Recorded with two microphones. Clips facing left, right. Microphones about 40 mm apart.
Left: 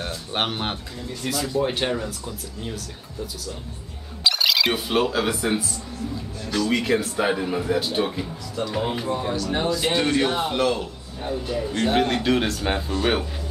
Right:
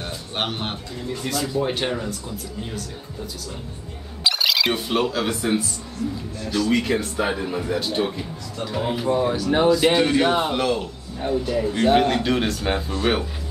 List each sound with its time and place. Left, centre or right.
0.3 s a man's voice: centre
4.2 s a man's voice: centre